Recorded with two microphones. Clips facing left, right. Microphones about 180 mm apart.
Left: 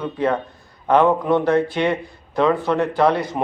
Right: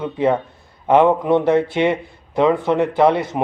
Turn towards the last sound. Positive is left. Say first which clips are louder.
# right 2 dB
turn(degrees=-20)  # may be behind; listen again after turning